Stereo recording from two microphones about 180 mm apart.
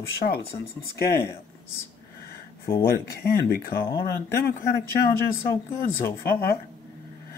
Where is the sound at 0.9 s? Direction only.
55° left (ahead or behind).